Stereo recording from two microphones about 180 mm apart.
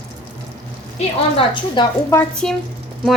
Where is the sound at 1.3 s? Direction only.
25° left (ahead or behind).